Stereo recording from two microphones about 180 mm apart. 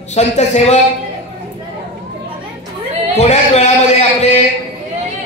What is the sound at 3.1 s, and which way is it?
Speech, 35° left (ahead or behind).